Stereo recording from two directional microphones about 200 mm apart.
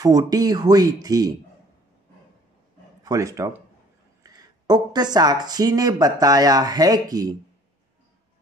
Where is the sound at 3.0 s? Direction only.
15° right (ahead or behind).